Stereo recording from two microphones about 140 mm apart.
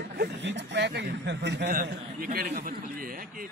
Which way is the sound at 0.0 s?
90° right.